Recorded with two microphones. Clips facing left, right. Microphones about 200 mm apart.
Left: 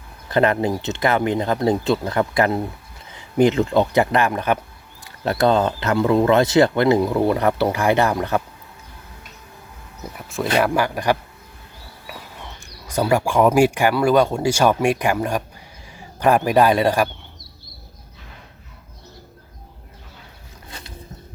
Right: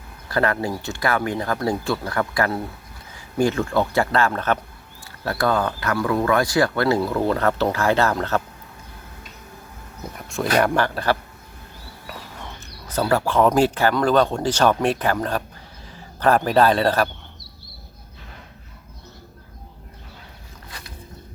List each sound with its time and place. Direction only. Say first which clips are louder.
0.3 s speech: left 4 dB; 20° left (ahead or behind)
10.2 s speech: even; centre (ahead or behind)
12.9 s a man's voice: left 2 dB; 10° left (ahead or behind)
20.7 s a sound: left 2 dB; 25° left (ahead or behind)